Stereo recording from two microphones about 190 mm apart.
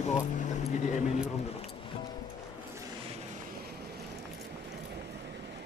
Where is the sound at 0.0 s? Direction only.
35° left (ahead or behind).